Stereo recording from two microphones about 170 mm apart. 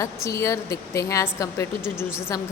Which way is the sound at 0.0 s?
15° left (ahead or behind).